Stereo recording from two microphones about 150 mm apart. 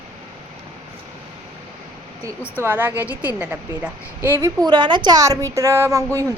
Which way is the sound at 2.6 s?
15° right (ahead or behind).